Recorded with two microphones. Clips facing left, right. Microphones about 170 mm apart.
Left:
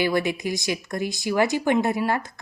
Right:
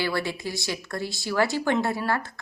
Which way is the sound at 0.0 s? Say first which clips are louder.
Left 5 dB; 20° left (ahead or behind).